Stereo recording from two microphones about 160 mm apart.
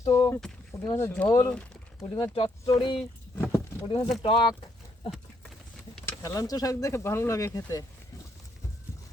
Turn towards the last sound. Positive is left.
turn(degrees=20)  # may be behind; listen again after turning